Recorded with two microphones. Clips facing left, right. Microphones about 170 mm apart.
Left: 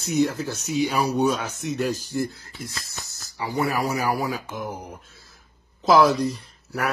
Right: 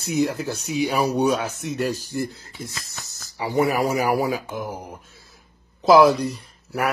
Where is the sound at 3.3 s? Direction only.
20° right (ahead or behind).